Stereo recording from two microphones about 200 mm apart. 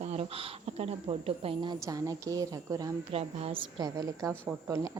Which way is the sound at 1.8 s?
15° right (ahead or behind).